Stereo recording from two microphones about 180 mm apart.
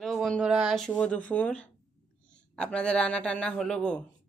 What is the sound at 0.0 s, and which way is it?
Speech, centre (ahead or behind).